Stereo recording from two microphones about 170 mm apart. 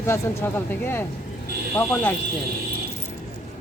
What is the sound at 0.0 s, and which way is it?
Speech, 15° left (ahead or behind).